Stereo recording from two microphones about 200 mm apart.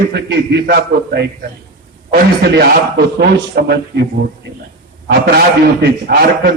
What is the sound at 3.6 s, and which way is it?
Speech, 55° right (ahead or behind).